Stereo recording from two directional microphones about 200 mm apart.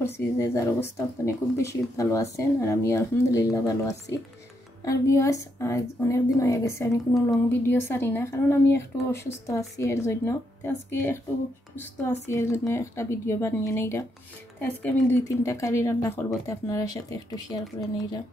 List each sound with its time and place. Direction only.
0.0 s speech: 15° left (ahead or behind)